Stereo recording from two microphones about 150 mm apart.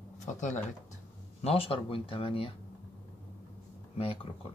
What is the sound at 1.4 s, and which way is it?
Speech, 40° left (ahead or behind).